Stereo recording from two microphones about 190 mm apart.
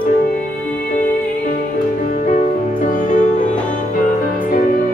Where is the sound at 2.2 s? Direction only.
45° left (ahead or behind).